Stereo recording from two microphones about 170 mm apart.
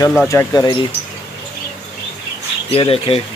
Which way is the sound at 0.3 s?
15° left (ahead or behind).